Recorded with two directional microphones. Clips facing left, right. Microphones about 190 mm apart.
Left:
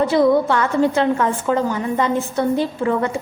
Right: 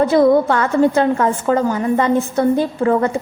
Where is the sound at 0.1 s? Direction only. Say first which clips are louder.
Right 3 dB; 50° right (ahead or behind).